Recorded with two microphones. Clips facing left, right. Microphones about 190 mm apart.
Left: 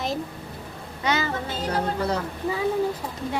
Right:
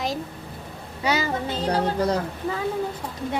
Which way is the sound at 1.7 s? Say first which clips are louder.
Right 2 dB; 40° right (ahead or behind).